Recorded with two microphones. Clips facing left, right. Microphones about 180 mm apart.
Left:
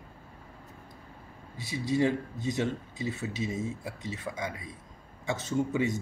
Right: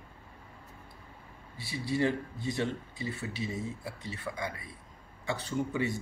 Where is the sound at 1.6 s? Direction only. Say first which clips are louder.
Left 3 dB; 20° left (ahead or behind).